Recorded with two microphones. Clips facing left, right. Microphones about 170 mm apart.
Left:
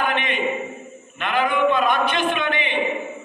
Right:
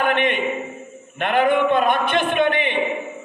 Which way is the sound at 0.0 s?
55° right (ahead or behind).